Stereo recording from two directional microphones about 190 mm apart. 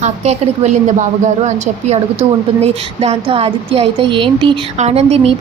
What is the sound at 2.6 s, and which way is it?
A woman's voice, 35° right (ahead or behind).